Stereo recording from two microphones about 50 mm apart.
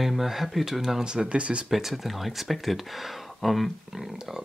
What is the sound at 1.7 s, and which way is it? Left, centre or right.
Speech, centre.